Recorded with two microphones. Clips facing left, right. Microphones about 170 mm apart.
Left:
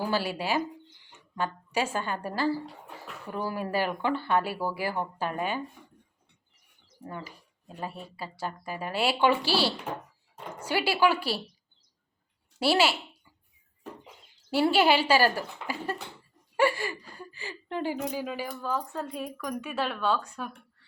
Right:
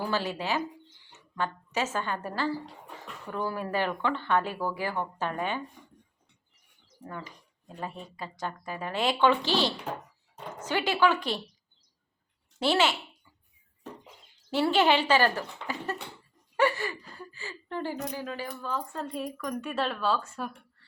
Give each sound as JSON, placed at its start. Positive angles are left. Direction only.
{"t": 0.0, "sound": "speech", "side_deg": 10}
{"t": 1.1, "sound": "a sound", "side_deg": 10}
{"t": 2.0, "sound": "a woman's voice", "side_deg": 10}
{"t": 7.0, "sound": "speech", "side_deg": 30}
{"t": 7.9, "sound": "a woman's voice", "side_deg": 5}
{"t": 12.5, "sound": "a woman's voice", "side_deg": 10}
{"t": 14.5, "sound": "a woman's voice", "side_deg": 10}